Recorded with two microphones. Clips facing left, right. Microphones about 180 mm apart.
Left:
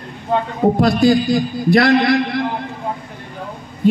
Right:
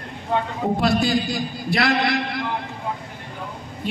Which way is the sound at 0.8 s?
45° left (ahead or behind).